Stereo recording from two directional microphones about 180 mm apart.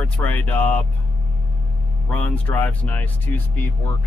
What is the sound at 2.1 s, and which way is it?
Speech, 10° left (ahead or behind).